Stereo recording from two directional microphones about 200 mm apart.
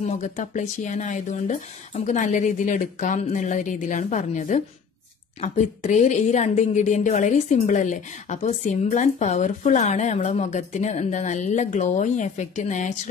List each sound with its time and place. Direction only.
0.0 s a woman's voice: 35° left (ahead or behind)